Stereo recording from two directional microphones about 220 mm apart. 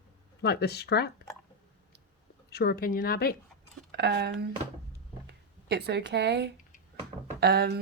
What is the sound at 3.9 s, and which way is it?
Speech, 50° right (ahead or behind).